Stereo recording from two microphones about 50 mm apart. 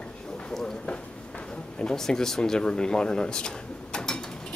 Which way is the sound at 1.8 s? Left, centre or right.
Centre.